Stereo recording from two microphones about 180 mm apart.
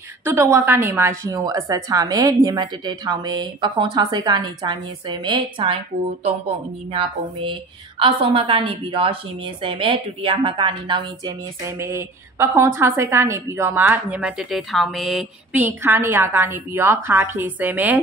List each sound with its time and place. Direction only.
0.2 s a woman's voice: 15° right (ahead or behind)
6.9 s a woman's voice: 30° right (ahead or behind)
11.6 s a woman's voice: 15° right (ahead or behind)